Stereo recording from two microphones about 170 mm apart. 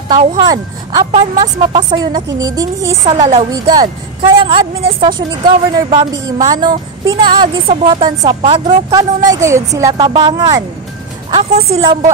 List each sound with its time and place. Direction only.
0.4 s a woman's voice: 20° right (ahead or behind)
3.2 s speech: 45° right (ahead or behind)
3.5 s a woman's voice: 25° right (ahead or behind)
8.9 s a woman's voice: 20° right (ahead or behind)